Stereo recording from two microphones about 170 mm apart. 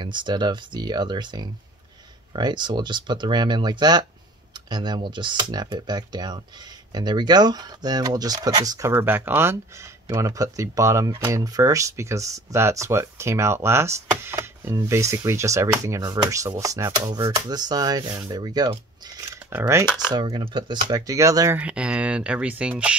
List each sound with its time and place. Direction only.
0.0 s speech: 25° right (ahead or behind)
21.5 s speech: 5° right (ahead or behind)